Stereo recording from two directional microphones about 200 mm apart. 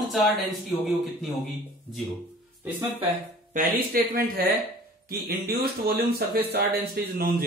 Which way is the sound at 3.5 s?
45° right (ahead or behind).